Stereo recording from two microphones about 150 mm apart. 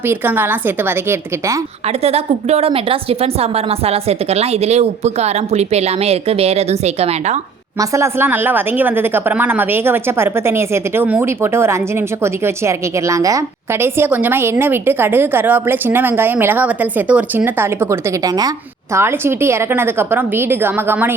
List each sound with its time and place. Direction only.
0.1 s a woman's voice: 15° right (ahead or behind)
2.0 s a woman's voice: 40° right (ahead or behind)
7.8 s a woman's voice: 20° right (ahead or behind)
18.9 s a woman's voice: 15° right (ahead or behind)